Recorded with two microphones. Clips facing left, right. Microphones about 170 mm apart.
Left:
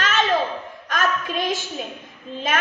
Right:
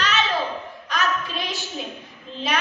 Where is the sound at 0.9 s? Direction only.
50° left (ahead or behind).